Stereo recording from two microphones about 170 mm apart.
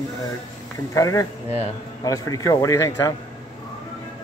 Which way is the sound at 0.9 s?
20° left (ahead or behind).